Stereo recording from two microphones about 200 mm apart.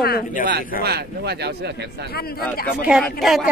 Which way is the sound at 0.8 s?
55° right (ahead or behind).